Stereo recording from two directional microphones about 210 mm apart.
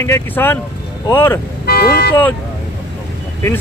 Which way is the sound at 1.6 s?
45° left (ahead or behind).